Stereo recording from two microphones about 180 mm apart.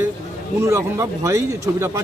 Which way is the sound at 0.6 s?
15° right (ahead or behind).